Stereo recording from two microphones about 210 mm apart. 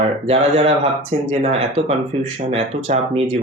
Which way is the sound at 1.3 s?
30° right (ahead or behind).